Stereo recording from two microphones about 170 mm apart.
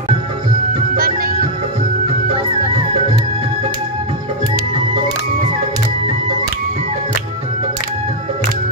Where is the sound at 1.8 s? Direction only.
35° right (ahead or behind).